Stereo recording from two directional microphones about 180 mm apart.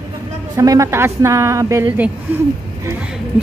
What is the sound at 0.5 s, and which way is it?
Speech, 20° right (ahead or behind).